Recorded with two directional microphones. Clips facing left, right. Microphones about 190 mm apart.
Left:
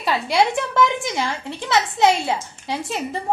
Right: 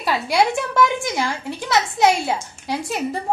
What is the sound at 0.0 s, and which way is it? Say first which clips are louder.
A woman's voice: even; 5° right (ahead or behind).